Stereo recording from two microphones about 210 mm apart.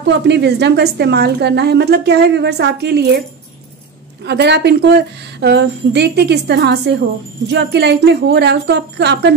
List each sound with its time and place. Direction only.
0.0 s a woman's voice: 55° right (ahead or behind)
4.2 s a woman's voice: 55° right (ahead or behind)